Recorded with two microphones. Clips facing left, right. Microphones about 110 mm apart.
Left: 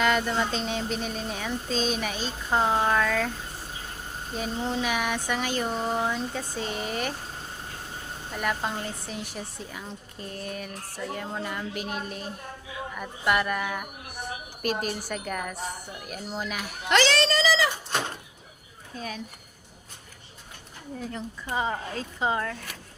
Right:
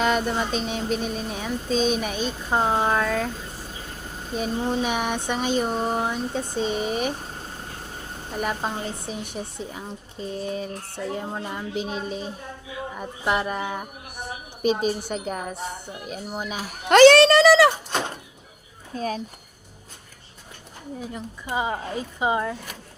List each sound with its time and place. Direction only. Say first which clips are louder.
0.0 s speech: right 2 dB; 20° right (ahead or behind)
4.4 s speech: right 4 dB; 15° right (ahead or behind)
8.3 s speech: right 2 dB; 20° right (ahead or behind)
11.8 s a woman's voice: right 7 dB; 65° left (ahead or behind)
12.9 s speech: right 1 dB; 25° right (ahead or behind)
14.6 s a woman's voice: right 7 dB; 70° left (ahead or behind)
15.0 s speech: right 3 dB; 20° right (ahead or behind)
16.6 s speech: right 11 dB; 45° right (ahead or behind)
18.9 s speech: right 8 dB; 40° right (ahead or behind)
21.0 s speech: left 1 dB; 10° right (ahead or behind)